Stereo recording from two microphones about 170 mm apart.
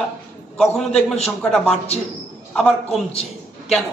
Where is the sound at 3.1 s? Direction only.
35° left (ahead or behind).